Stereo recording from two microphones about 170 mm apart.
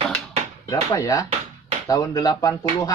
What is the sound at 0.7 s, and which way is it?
Speech, 20° left (ahead or behind).